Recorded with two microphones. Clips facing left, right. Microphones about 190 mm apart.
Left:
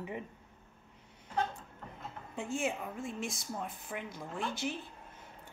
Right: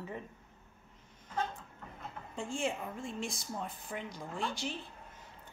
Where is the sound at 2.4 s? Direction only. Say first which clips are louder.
Left 1 dB; 5° left (ahead or behind).